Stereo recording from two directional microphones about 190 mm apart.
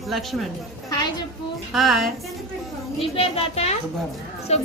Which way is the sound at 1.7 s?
Centre (ahead or behind).